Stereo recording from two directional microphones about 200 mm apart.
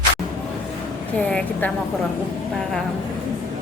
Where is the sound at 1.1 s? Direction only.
5° left (ahead or behind).